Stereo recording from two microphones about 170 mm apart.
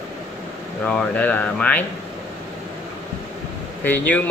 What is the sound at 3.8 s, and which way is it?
Speech, 10° left (ahead or behind).